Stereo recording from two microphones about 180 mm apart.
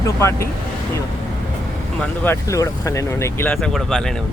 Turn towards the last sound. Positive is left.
turn(degrees=0)  # may be behind; listen again after turning